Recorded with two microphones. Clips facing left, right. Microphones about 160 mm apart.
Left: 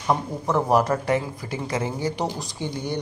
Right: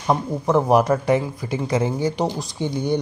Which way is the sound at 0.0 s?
20° right (ahead or behind).